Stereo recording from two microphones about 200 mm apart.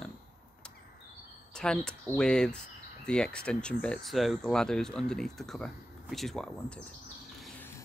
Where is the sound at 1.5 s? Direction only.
5° left (ahead or behind).